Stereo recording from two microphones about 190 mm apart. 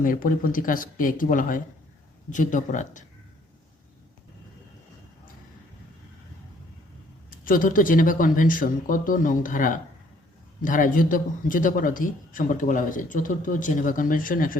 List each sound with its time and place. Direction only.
0.0 s a man's voice: 45° left (ahead or behind)
7.3 s a man's voice: 45° left (ahead or behind)